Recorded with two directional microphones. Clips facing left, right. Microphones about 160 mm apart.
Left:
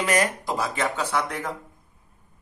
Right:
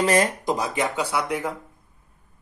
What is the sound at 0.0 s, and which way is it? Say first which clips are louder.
Speech: right 3 dB; 30° right (ahead or behind).